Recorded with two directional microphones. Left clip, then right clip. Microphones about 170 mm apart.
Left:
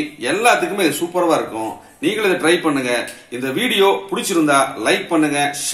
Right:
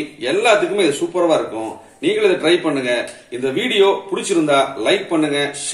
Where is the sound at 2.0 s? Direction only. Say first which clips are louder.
Right 1 dB; 45° left (ahead or behind).